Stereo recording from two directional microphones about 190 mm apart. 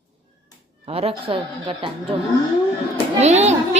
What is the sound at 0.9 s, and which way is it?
A woman's voice, 30° right (ahead or behind).